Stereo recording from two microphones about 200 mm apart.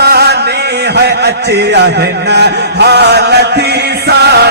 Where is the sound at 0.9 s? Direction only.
55° right (ahead or behind).